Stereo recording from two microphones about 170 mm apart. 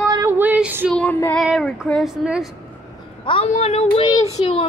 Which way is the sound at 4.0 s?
20° left (ahead or behind).